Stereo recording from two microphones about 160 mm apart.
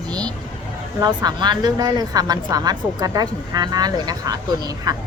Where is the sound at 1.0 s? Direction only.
25° right (ahead or behind).